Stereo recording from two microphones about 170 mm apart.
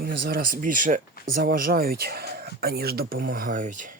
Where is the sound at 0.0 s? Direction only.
60° right (ahead or behind).